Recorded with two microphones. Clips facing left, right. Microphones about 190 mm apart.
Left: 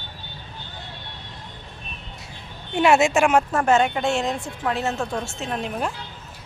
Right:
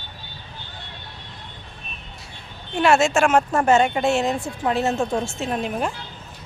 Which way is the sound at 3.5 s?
Centre (ahead or behind).